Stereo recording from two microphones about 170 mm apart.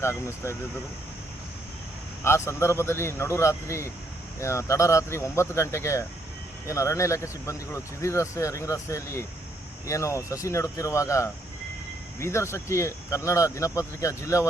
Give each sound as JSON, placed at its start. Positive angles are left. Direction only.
{"t": 0.0, "sound": "speech", "side_deg": 15}
{"t": 2.2, "sound": "speech", "side_deg": 15}